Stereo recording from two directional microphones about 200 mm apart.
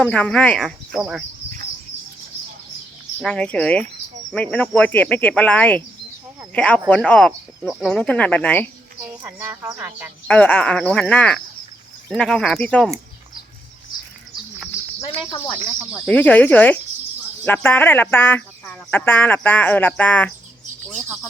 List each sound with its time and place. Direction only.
0.0 s speech: 5° left (ahead or behind)
3.2 s speech: 5° left (ahead or behind)
9.2 s speech: 10° right (ahead or behind)
10.2 s speech: 5° left (ahead or behind)
15.0 s cricket: 25° left (ahead or behind)
16.0 s speech: 10° left (ahead or behind)